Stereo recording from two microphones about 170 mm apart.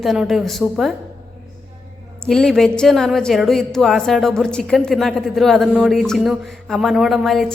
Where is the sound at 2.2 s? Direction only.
5° left (ahead or behind).